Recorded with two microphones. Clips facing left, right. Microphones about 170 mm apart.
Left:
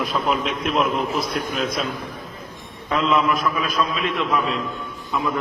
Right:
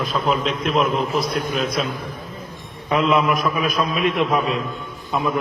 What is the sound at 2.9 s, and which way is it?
A man's voice, 15° right (ahead or behind).